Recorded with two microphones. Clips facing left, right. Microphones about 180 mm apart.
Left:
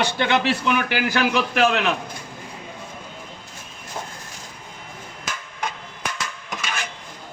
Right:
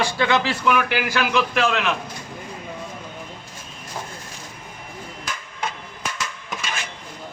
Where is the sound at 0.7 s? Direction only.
35° left (ahead or behind).